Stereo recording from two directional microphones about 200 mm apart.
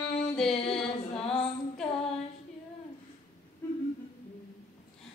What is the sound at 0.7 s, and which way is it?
Female singing, 30° left (ahead or behind).